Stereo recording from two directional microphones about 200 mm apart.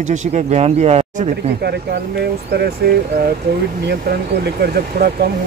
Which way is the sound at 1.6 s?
55° right (ahead or behind).